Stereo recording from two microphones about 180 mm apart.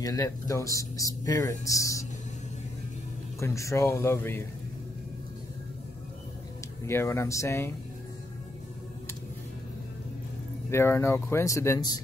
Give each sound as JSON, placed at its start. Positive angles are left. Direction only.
{"t": 0.0, "sound": "speech", "side_deg": 20}
{"t": 3.3, "sound": "speech", "side_deg": 15}
{"t": 6.9, "sound": "speech", "side_deg": 15}
{"t": 10.7, "sound": "speech", "side_deg": 15}